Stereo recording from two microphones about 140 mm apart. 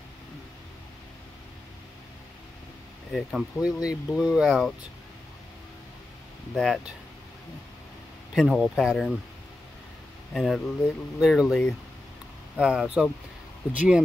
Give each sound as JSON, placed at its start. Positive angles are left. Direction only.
{"t": 3.1, "sound": "speech", "side_deg": 0}
{"t": 6.5, "sound": "speech", "side_deg": 5}
{"t": 8.4, "sound": "speech", "side_deg": 0}
{"t": 10.3, "sound": "speech", "side_deg": 0}